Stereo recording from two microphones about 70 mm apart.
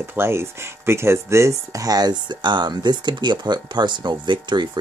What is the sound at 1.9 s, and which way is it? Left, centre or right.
Speech, right.